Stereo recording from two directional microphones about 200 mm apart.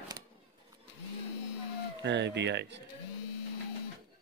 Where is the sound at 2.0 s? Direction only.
60° right (ahead or behind).